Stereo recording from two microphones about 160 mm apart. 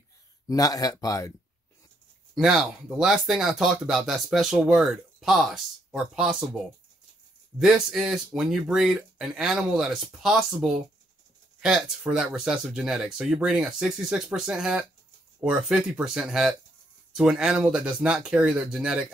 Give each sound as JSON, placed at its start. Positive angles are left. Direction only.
{"t": 0.5, "sound": "speech", "side_deg": 25}
{"t": 2.3, "sound": "speech", "side_deg": 0}